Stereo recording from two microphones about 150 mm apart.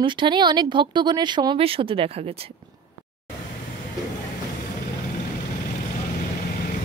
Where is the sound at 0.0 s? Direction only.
35° right (ahead or behind).